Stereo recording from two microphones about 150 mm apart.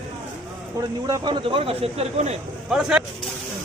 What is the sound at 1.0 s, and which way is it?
Speech, 30° right (ahead or behind).